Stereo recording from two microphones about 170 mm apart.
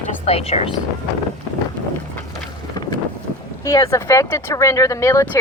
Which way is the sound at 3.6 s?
20° left (ahead or behind).